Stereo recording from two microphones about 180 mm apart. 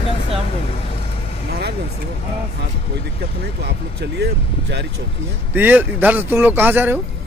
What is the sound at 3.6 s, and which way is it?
Speech, 70° right (ahead or behind).